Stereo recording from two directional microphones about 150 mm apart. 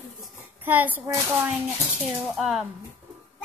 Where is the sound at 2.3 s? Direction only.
5° right (ahead or behind).